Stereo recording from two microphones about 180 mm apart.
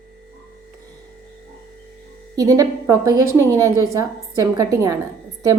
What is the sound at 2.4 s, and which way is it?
A woman's voice, 20° right (ahead or behind).